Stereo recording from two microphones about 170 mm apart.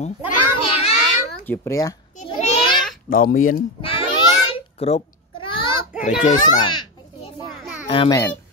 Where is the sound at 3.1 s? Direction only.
55° left (ahead or behind).